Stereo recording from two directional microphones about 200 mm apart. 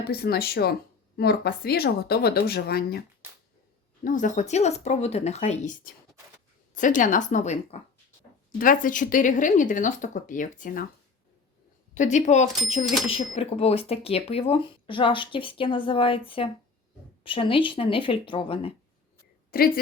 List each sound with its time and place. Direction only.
0.1 s speech: 50° left (ahead or behind)
4.0 s speech: 40° left (ahead or behind)
11.9 s speech: 35° left (ahead or behind)
19.5 s a woman's voice: 50° left (ahead or behind)